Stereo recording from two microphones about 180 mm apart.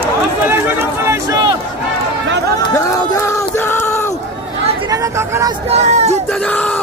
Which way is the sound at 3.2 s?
15° left (ahead or behind).